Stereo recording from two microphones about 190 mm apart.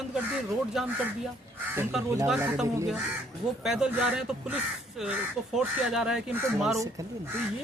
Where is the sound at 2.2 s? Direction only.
5° right (ahead or behind).